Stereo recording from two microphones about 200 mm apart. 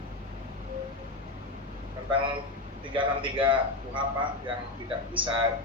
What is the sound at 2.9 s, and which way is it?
A man's voice, 25° right (ahead or behind).